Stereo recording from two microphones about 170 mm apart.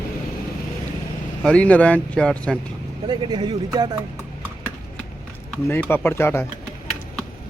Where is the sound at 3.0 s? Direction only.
25° right (ahead or behind).